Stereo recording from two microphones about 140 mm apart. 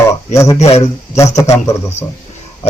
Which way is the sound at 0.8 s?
20° left (ahead or behind).